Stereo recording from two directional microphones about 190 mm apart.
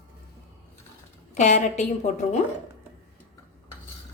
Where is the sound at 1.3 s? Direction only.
40° left (ahead or behind).